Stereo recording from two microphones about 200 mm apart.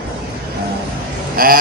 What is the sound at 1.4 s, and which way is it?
Speech, 45° right (ahead or behind).